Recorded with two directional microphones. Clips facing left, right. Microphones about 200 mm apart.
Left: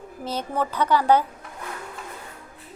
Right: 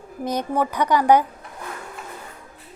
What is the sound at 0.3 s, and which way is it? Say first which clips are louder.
Speech: right 4 dB; 15° right (ahead or behind).